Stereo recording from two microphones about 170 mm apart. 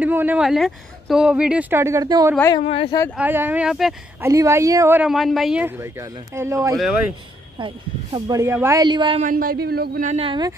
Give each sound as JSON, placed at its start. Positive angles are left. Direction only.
{"t": 0.0, "sound": "speech", "side_deg": -10}
{"t": 2.6, "sound": "speech", "side_deg": 35}
{"t": 3.2, "sound": "speech", "side_deg": -10}
{"t": 4.2, "sound": "speech", "side_deg": -20}
{"t": 5.1, "sound": "speech", "side_deg": 0}
{"t": 7.5, "sound": "speech", "side_deg": -30}
{"t": 9.2, "sound": "speech", "side_deg": -55}
{"t": 10.0, "sound": "speech", "side_deg": -35}